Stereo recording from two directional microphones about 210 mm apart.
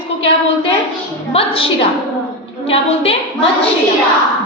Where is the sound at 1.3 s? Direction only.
25° left (ahead or behind).